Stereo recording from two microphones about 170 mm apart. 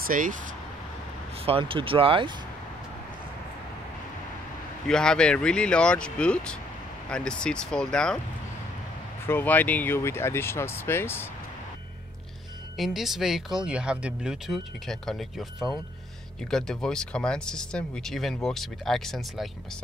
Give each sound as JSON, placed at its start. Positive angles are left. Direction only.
{"t": 0.0, "sound": "speech", "side_deg": -55}
{"t": 1.4, "sound": "speech", "side_deg": -35}
{"t": 4.8, "sound": "speech", "side_deg": 5}
{"t": 9.3, "sound": "speech", "side_deg": 10}
{"t": 12.7, "sound": "speech", "side_deg": 0}
{"t": 16.4, "sound": "speech", "side_deg": 5}